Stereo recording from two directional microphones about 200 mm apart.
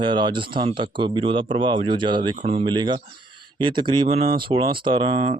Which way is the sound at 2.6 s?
25° right (ahead or behind).